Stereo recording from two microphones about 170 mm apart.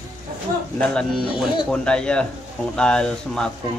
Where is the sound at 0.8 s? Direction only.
5° left (ahead or behind).